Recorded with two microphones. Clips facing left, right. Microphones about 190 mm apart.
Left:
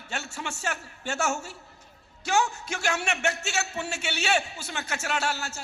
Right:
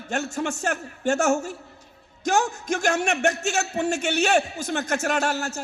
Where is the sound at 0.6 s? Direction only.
55° right (ahead or behind).